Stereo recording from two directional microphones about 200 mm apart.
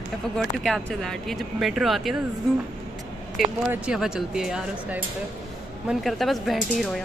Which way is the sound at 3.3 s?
5° right (ahead or behind).